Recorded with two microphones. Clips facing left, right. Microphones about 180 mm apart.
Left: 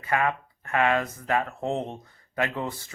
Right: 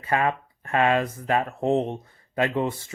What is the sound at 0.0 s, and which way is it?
Speech, 25° right (ahead or behind).